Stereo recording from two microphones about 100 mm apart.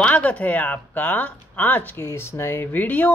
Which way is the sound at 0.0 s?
15° left (ahead or behind).